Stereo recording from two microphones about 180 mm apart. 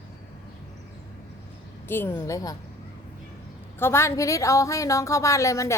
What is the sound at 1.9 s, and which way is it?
Speech, 10° left (ahead or behind).